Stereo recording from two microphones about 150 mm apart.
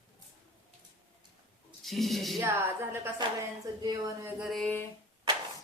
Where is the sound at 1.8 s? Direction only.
Centre (ahead or behind).